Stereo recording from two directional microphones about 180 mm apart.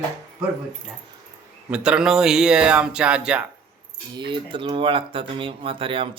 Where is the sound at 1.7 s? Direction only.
5° right (ahead or behind).